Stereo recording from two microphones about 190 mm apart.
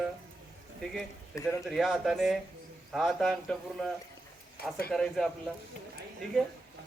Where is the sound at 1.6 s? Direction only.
Centre (ahead or behind).